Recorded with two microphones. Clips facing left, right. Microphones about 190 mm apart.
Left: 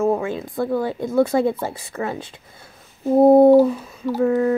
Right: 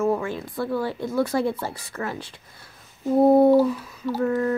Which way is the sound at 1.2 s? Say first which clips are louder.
Left 5 dB; 20° left (ahead or behind).